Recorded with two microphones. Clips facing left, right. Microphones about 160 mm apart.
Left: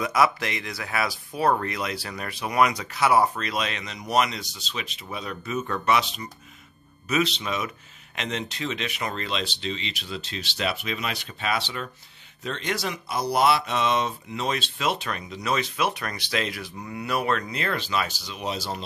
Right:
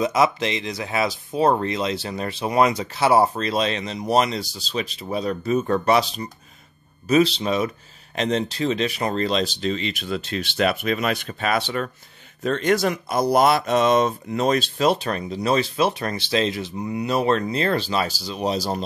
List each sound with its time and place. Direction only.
0.0 s speech: 25° right (ahead or behind); by 18.8 s 40° right (ahead or behind)